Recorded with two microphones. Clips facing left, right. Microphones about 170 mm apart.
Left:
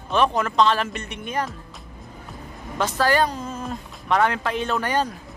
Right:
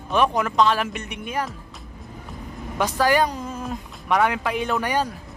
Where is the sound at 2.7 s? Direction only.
15° right (ahead or behind).